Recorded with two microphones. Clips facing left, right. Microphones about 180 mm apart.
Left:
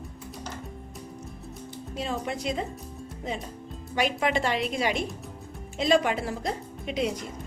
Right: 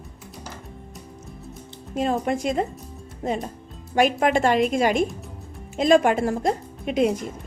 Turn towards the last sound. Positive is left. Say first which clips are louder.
# right 7 dB
turn(degrees=-50)  # may be behind; listen again after turning